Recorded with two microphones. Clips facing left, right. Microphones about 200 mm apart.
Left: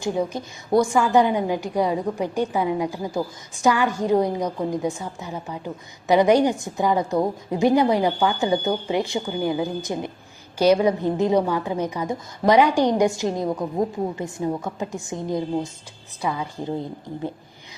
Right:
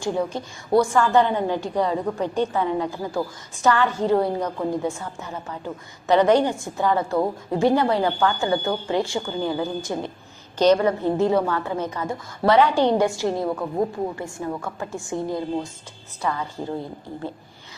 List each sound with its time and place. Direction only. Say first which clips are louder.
0.0 s a woman's voice: even; 15° left (ahead or behind)